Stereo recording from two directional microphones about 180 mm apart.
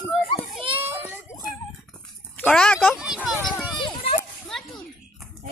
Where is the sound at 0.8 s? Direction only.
10° right (ahead or behind).